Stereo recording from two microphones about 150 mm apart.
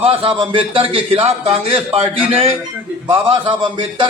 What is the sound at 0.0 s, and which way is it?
A man's voice, 40° right (ahead or behind).